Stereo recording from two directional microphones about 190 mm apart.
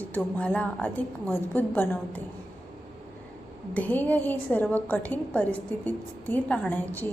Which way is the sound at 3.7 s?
10° left (ahead or behind).